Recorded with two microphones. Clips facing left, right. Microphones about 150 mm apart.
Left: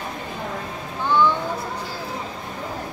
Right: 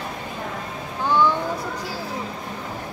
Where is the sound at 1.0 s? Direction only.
15° right (ahead or behind).